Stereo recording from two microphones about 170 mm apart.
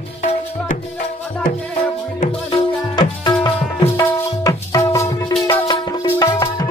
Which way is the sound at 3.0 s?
25° left (ahead or behind).